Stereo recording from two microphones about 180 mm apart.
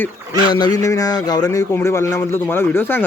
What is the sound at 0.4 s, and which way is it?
Speech, 25° left (ahead or behind).